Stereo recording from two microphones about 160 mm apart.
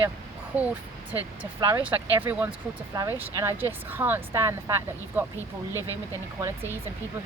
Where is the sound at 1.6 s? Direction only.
20° right (ahead or behind).